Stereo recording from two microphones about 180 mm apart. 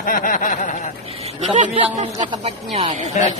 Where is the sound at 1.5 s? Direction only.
45° right (ahead or behind).